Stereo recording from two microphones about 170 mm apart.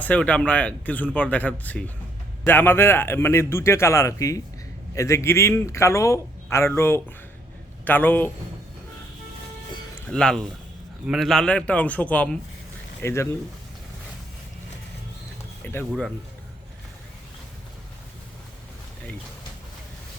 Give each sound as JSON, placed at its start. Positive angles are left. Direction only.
{"t": 0.0, "sound": "a man's voice", "side_deg": 10}
{"t": 10.1, "sound": "a man's voice", "side_deg": 5}
{"t": 15.6, "sound": "speech", "side_deg": 10}